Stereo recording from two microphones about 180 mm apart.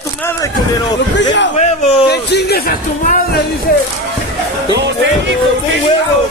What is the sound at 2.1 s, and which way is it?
Speech, 65° left (ahead or behind).